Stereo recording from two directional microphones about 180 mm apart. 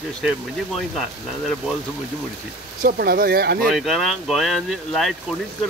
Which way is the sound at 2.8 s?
55° right (ahead or behind).